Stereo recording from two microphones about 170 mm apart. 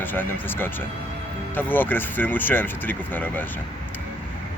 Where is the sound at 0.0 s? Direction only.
10° left (ahead or behind).